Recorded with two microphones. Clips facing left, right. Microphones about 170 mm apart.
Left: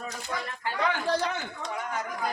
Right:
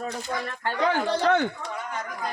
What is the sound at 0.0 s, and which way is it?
Speech, 45° right (ahead or behind).